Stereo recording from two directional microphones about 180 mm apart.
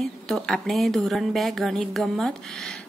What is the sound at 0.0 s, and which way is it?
A woman's voice, centre (ahead or behind).